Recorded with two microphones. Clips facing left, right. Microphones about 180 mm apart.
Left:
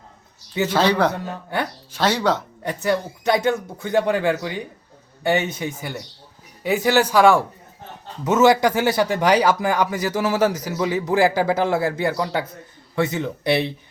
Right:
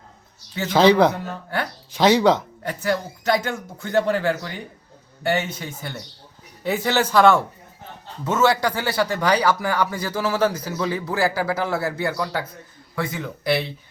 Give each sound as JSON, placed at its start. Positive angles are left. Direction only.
{"t": 0.7, "sound": "speech", "side_deg": -10}
{"t": 2.6, "sound": "a man's voice", "side_deg": 20}